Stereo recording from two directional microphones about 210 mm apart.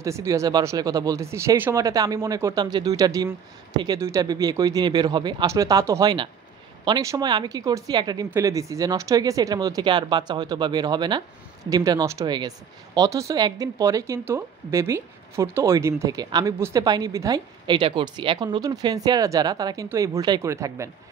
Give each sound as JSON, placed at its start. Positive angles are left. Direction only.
{"t": 0.0, "sound": "a woman's voice", "side_deg": -15}